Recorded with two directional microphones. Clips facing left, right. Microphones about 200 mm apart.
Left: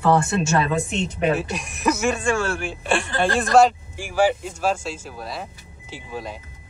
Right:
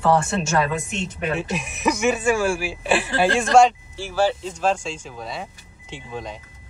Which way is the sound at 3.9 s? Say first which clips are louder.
Left 3 dB; 15° left (ahead or behind).